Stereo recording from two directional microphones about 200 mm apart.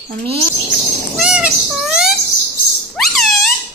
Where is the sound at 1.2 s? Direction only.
5° right (ahead or behind).